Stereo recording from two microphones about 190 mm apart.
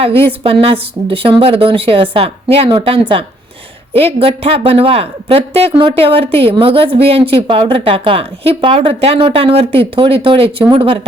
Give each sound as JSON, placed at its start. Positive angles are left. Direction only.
{"t": 0.0, "sound": "a woman's voice", "side_deg": -30}